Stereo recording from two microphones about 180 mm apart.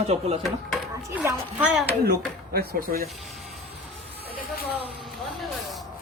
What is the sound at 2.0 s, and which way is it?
Speech, 60° right (ahead or behind).